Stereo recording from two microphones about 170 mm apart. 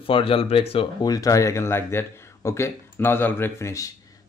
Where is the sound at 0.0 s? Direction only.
30° left (ahead or behind).